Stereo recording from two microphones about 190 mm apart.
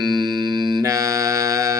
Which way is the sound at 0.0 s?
20° right (ahead or behind).